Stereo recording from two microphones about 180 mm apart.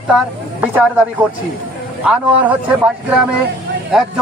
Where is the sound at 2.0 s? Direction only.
5° right (ahead or behind).